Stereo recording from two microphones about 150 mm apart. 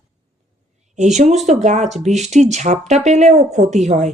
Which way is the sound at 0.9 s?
50° right (ahead or behind).